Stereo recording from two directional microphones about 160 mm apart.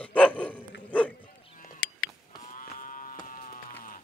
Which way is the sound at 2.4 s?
55° left (ahead or behind).